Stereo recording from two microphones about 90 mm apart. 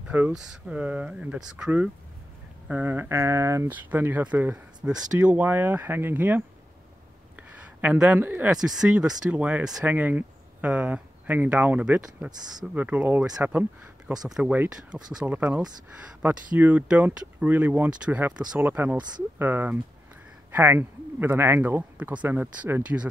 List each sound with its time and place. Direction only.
0.3 s speech: 10° right (ahead or behind); by 3.6 s 30° right (ahead or behind)
3.6 s speech: 20° right (ahead or behind)
7.8 s speech: 15° right (ahead or behind)
8.5 s speech: 5° right (ahead or behind)
15.2 s speech: 20° right (ahead or behind)